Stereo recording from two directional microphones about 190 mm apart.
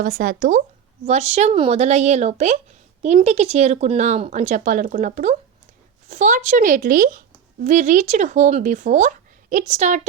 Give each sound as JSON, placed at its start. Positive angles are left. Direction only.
{"t": 0.0, "sound": "speech", "side_deg": -45}